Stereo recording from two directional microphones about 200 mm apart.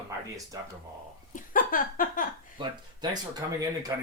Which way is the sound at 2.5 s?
20° right (ahead or behind).